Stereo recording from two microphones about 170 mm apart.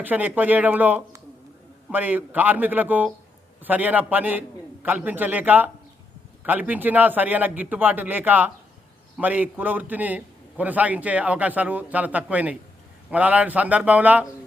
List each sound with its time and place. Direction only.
0.0 s a man's voice: 10° right (ahead or behind)